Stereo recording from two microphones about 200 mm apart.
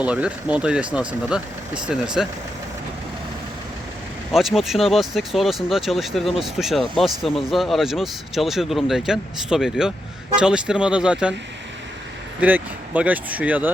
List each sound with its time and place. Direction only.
0.0 s speech: 5° right (ahead or behind)
4.3 s speech: centre (ahead or behind)
12.4 s speech: 10° right (ahead or behind)